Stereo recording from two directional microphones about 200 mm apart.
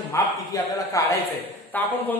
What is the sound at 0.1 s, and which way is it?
Speech, 15° left (ahead or behind).